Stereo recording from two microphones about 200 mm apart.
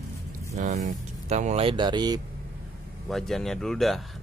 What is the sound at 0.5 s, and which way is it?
Speech, 35° right (ahead or behind).